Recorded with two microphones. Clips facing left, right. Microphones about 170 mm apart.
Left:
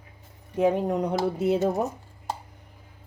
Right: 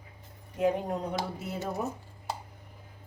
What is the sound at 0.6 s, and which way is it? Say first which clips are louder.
Speech: left 5 dB; 90° left.